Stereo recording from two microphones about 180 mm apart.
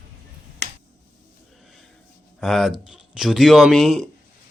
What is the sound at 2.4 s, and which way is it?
Speech, centre (ahead or behind).